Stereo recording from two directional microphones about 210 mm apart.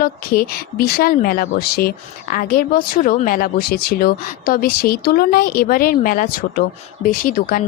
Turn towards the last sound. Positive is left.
turn(degrees=40)  # may be behind; listen again after turning